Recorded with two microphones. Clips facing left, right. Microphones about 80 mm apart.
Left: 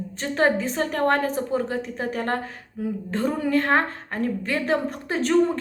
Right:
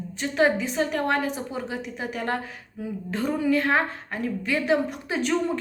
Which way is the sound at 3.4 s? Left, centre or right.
Left.